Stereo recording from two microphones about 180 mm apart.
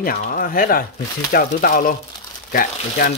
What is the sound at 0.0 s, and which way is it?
Speech, 50° left (ahead or behind).